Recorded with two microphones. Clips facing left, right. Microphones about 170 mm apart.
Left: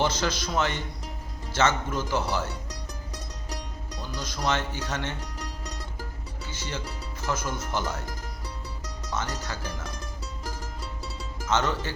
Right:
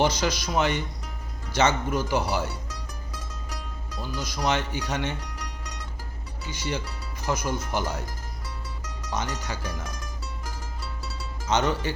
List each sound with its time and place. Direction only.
0.0 s speech: 15° right (ahead or behind)
4.2 s speech: 15° right (ahead or behind)
6.5 s speech: 15° right (ahead or behind)
9.1 s speech: 15° right (ahead or behind)
11.4 s speech: 15° right (ahead or behind)